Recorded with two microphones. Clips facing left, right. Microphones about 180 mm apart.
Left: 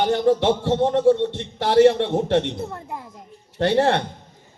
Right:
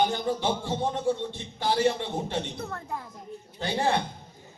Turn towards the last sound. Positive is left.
turn(degrees=70)  # may be behind; listen again after turning